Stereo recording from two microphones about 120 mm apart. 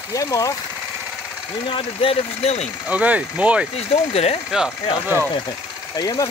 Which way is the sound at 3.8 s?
60° left (ahead or behind).